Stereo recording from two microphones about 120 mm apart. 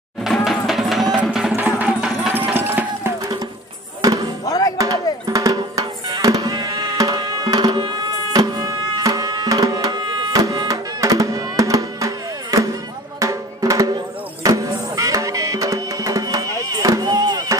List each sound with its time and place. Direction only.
0.2 s music: centre (ahead or behind)
4.0 s music: 30° right (ahead or behind)
4.5 s music: 30° left (ahead or behind)
4.7 s drum: 30° right (ahead or behind)
13.2 s music: 25° right (ahead or behind)